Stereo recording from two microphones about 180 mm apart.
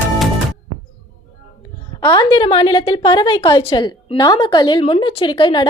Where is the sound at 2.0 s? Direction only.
25° left (ahead or behind).